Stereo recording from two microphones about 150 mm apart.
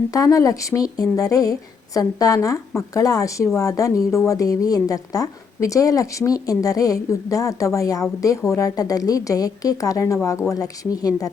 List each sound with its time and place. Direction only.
0.1 s a woman's voice: 20° left (ahead or behind)